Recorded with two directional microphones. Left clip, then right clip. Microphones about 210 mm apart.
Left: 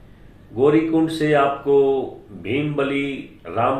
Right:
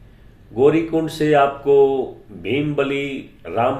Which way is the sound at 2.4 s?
40° right (ahead or behind).